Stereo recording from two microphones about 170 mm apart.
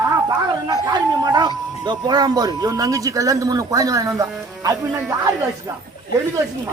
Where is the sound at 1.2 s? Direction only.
25° right (ahead or behind).